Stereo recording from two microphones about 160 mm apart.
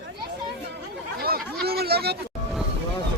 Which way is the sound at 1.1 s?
70° right (ahead or behind).